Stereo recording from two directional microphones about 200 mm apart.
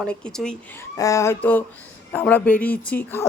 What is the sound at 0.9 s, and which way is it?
Speech, 15° left (ahead or behind).